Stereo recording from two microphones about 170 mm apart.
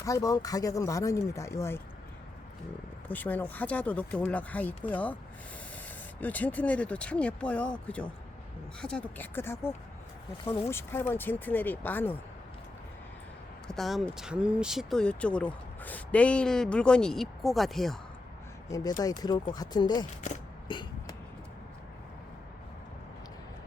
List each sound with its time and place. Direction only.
0.0 s speech: 20° left (ahead or behind)
3.1 s speech: 10° left (ahead or behind)
6.1 s speech: 10° left (ahead or behind)
13.7 s speech: centre (ahead or behind)
18.7 s speech: 20° left (ahead or behind)
20.7 s a sound: 25° left (ahead or behind)